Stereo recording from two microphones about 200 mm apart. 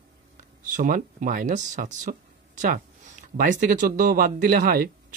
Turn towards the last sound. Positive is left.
turn(degrees=-45)  # may be behind; listen again after turning